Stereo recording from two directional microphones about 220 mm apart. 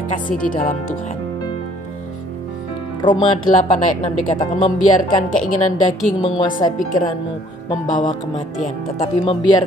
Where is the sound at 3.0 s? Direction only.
20° left (ahead or behind).